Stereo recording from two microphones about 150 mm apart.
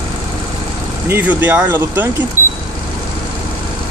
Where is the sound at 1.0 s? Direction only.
15° right (ahead or behind).